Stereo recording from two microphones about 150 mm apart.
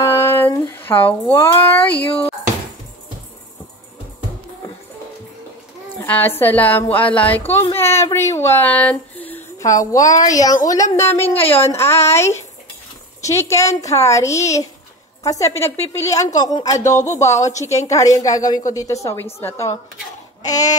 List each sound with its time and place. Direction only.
0.0 s a sound: 15° left (ahead or behind)
0.7 s speech: 15° left (ahead or behind)
5.9 s speech: 15° left (ahead or behind)
9.6 s speech: 20° left (ahead or behind)
11.3 s a woman's voice: 40° left (ahead or behind)
11.6 s speech: 15° left (ahead or behind)
11.9 s speech: 45° left (ahead or behind)
13.2 s speech: 20° left (ahead or behind)
20.4 s speech: 25° left (ahead or behind)